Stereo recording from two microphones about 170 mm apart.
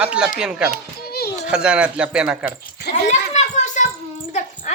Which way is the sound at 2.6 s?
70° left (ahead or behind).